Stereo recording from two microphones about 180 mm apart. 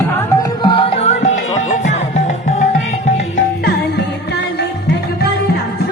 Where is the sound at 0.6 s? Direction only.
30° left (ahead or behind).